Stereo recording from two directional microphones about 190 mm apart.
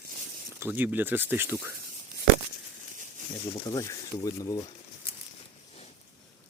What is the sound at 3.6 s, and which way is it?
Speech, 20° left (ahead or behind).